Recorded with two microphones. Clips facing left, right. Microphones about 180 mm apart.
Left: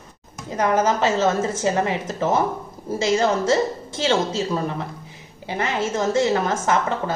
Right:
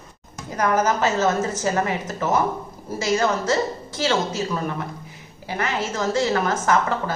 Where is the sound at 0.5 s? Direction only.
25° left (ahead or behind).